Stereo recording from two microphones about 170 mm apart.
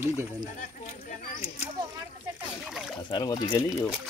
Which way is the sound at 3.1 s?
25° left (ahead or behind).